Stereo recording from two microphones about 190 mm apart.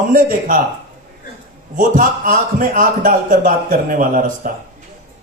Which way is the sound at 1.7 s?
45° right (ahead or behind).